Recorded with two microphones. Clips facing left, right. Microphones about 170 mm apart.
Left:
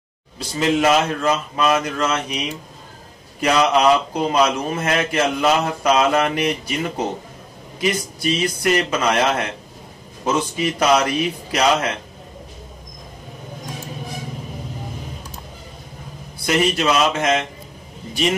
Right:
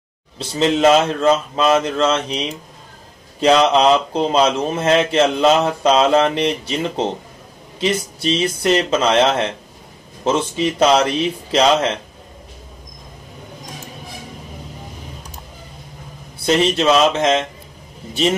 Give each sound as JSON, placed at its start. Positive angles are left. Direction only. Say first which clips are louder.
{"t": 0.4, "sound": "speech", "louder": "right 3 dB", "side_deg": -25}
{"t": 16.4, "sound": "speech", "louder": "right 3 dB", "side_deg": -25}